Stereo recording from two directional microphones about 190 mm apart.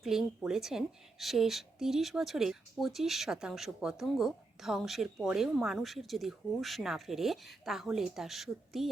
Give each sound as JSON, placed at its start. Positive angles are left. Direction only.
{"t": 0.0, "sound": "a woman's voice", "side_deg": 0}